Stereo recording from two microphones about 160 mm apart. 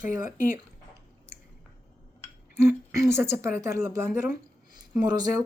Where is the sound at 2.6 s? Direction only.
15° right (ahead or behind).